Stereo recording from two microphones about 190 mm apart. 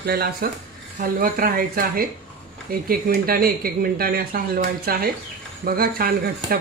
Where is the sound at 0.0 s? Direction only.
55° right (ahead or behind).